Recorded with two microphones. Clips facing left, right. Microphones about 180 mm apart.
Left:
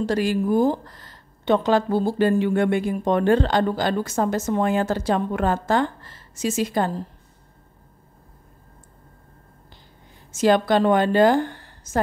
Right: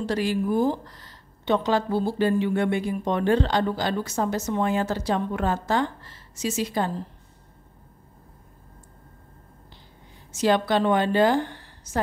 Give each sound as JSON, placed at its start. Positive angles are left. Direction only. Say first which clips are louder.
{"t": 0.0, "sound": "speech", "louder": "left 3 dB", "side_deg": 45}
{"t": 10.3, "sound": "speech", "louder": "left 4 dB", "side_deg": 50}